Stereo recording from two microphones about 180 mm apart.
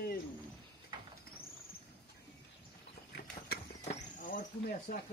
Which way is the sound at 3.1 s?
60° left (ahead or behind).